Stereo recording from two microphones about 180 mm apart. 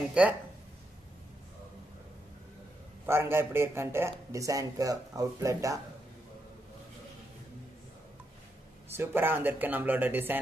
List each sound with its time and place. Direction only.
0.1 s a man's voice: 5° right (ahead or behind)
3.1 s a man's voice: 15° right (ahead or behind)
8.9 s a man's voice: 10° right (ahead or behind)